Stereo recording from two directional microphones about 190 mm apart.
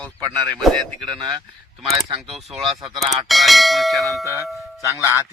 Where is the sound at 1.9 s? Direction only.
15° right (ahead or behind).